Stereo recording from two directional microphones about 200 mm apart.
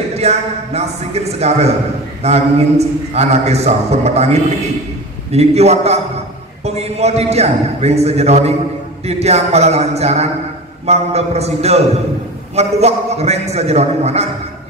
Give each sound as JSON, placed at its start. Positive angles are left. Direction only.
{"t": 0.1, "sound": "a man's voice", "side_deg": -30}